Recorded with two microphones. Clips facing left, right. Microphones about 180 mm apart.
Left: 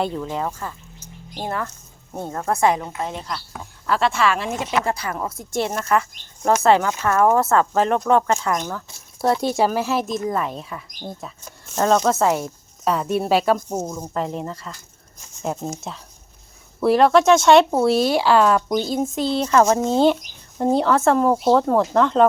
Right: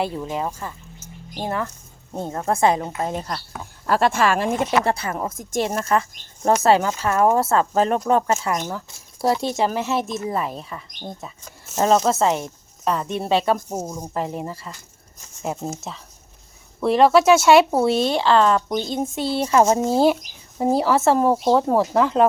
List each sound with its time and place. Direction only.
0.2 s a woman's voice: 20° right (ahead or behind)
3.0 s speech: 45° right (ahead or behind)
4.9 s a woman's voice: 25° right (ahead or behind)
8.3 s speech: 5° right (ahead or behind)
16.8 s speech: centre (ahead or behind)